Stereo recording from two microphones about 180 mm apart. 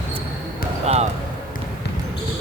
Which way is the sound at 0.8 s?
35° right (ahead or behind).